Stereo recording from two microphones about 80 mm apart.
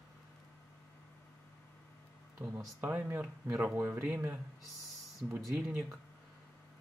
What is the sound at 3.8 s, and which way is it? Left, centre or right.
Speech, right.